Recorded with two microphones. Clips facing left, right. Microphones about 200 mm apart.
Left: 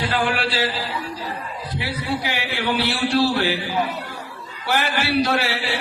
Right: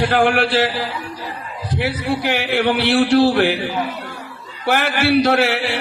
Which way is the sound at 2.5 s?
80° right.